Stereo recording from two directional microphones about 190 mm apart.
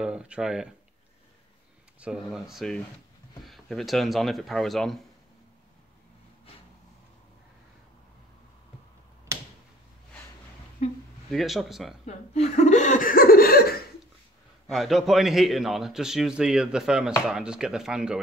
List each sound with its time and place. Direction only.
0.0 s a man's voice: 5° right (ahead or behind)
2.0 s a man's voice: 5° right (ahead or behind)
10.8 s speech: 35° left (ahead or behind)
11.3 s a man's voice: centre (ahead or behind)
12.4 s laughter: 35° left (ahead or behind); by 13.7 s 55° left (ahead or behind)
14.7 s a man's voice: centre (ahead or behind)